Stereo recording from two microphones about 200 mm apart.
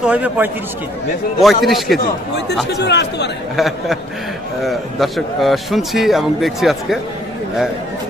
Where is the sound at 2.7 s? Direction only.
55° left (ahead or behind).